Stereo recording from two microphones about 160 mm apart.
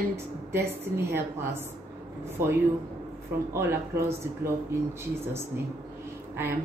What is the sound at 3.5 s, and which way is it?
A woman's voice, 15° right (ahead or behind).